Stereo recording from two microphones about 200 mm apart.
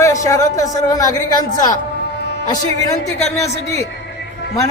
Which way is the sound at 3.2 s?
35° left (ahead or behind).